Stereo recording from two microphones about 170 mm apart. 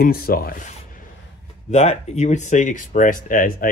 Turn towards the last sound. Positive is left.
turn(degrees=55)  # may be behind; listen again after turning